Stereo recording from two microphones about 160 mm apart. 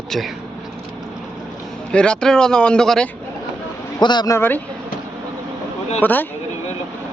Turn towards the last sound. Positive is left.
turn(degrees=10)  # may be behind; listen again after turning